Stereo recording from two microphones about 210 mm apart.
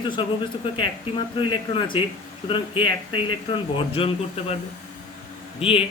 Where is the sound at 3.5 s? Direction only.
25° left (ahead or behind).